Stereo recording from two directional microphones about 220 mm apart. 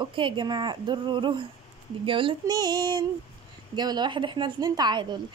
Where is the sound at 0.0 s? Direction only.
20° right (ahead or behind).